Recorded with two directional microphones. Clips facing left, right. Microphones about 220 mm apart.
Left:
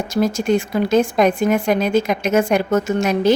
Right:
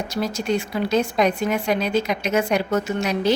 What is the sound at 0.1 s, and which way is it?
Speech, 50° left (ahead or behind).